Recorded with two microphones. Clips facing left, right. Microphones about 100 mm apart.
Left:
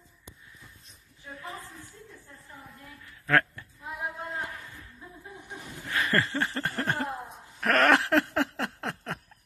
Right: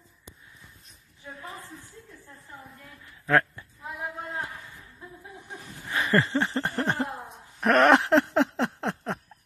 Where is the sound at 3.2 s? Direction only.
15° right (ahead or behind).